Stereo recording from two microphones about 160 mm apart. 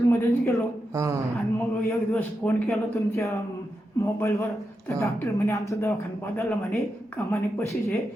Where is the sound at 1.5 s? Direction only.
10° left (ahead or behind).